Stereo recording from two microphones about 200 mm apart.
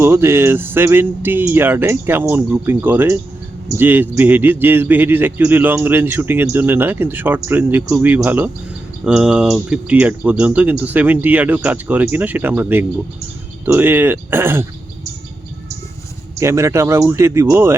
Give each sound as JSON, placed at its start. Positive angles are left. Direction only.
{"t": 0.0, "sound": "speech", "side_deg": -10}
{"t": 16.4, "sound": "speech", "side_deg": -15}